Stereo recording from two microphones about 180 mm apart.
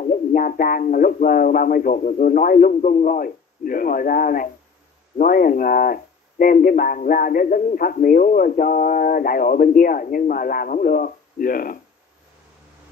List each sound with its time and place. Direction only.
0.0 s a man's voice: 50° left (ahead or behind)